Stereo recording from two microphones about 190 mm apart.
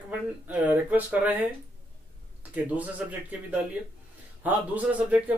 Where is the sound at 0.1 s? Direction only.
5° right (ahead or behind).